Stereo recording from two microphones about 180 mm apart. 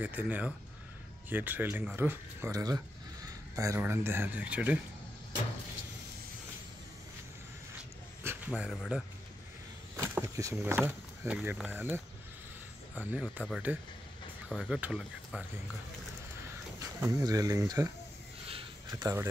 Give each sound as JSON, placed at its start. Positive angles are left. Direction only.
{"t": 0.0, "sound": "speech", "side_deg": -10}
{"t": 8.2, "sound": "speech", "side_deg": -10}
{"t": 9.9, "sound": "speech", "side_deg": -15}
{"t": 14.5, "sound": "speech", "side_deg": 5}
{"t": 16.8, "sound": "speech", "side_deg": -20}
{"t": 18.5, "sound": "a sound", "side_deg": -25}